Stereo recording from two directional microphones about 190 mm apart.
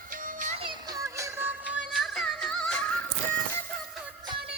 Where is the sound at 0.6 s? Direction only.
20° right (ahead or behind); by 2.9 s 5° left (ahead or behind).